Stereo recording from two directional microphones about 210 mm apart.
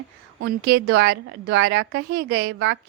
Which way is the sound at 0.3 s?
50° right (ahead or behind).